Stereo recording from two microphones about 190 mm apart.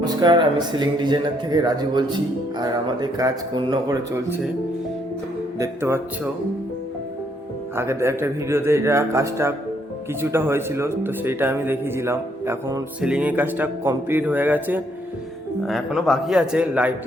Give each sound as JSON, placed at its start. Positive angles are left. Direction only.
{"t": 0.0, "sound": "speech", "side_deg": -20}
{"t": 5.5, "sound": "speech", "side_deg": -15}
{"t": 7.8, "sound": "a man's voice", "side_deg": -15}